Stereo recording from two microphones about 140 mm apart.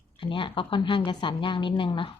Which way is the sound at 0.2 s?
40° left (ahead or behind).